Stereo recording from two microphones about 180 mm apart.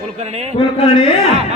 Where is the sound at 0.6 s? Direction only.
30° left (ahead or behind).